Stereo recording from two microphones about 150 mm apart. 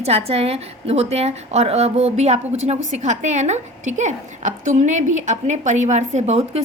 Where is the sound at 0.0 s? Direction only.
40° right (ahead or behind).